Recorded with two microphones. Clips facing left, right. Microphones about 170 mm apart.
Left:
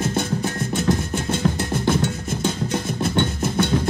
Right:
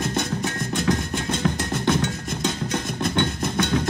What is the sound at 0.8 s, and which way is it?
Music, 5° left (ahead or behind).